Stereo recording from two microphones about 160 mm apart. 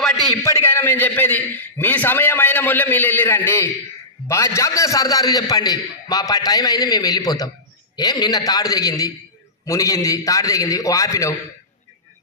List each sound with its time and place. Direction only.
0.4 s a man's voice: 15° left (ahead or behind)